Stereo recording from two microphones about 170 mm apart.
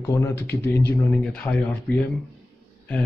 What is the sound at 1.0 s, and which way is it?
Speech, 5° left (ahead or behind).